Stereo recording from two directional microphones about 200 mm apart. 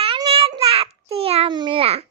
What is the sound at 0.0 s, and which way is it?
Child singing, 30° right (ahead or behind).